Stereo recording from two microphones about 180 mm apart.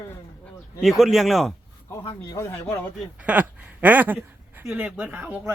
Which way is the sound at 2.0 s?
20° left (ahead or behind).